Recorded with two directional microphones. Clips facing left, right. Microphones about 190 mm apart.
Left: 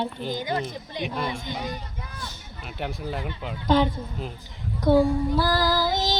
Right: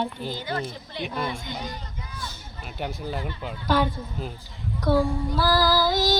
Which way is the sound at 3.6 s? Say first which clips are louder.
Left 3 dB; 20° left (ahead or behind).